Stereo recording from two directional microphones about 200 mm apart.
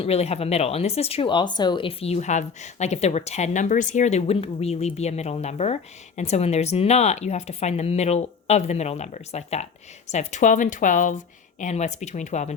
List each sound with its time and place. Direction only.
0.0 s speech: 30° left (ahead or behind)